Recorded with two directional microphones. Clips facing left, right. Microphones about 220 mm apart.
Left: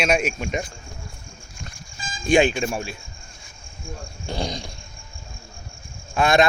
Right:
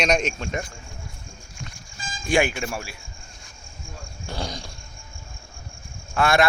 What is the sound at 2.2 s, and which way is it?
Speech, 20° left (ahead or behind).